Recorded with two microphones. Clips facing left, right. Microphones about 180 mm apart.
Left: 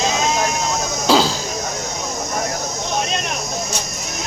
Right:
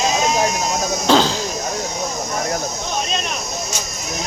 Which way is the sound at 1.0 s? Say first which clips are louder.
Even; 10° left (ahead or behind).